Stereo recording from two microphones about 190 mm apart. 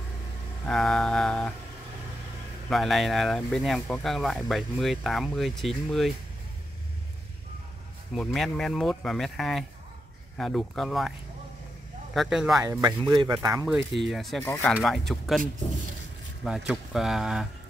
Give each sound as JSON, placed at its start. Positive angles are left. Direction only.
{"t": 0.7, "sound": "music", "side_deg": 5}
{"t": 2.7, "sound": "speech", "side_deg": 0}
{"t": 8.1, "sound": "speech", "side_deg": 0}
{"t": 13.1, "sound": "speech", "side_deg": -20}
{"t": 14.0, "sound": "speech", "side_deg": 0}
{"t": 16.4, "sound": "speech", "side_deg": 0}